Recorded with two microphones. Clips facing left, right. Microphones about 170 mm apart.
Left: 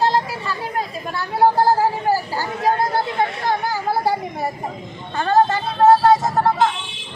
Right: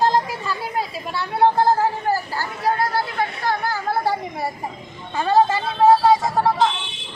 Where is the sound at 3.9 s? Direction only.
5° left (ahead or behind).